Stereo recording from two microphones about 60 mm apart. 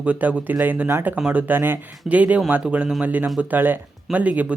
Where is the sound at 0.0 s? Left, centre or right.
Right.